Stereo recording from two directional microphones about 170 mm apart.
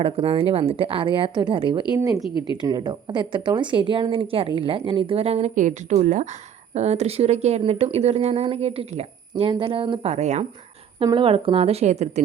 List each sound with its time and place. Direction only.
0.0 s speech: 35° right (ahead or behind)
11.0 s speech: 30° right (ahead or behind)